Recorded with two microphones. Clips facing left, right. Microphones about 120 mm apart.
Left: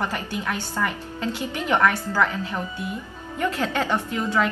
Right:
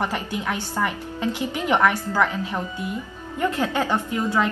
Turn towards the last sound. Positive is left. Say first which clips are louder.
# right 1 dB
turn(degrees=-15)  # may be behind; listen again after turning